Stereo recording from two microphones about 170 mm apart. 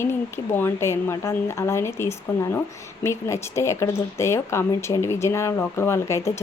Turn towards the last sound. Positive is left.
turn(degrees=15)  # may be behind; listen again after turning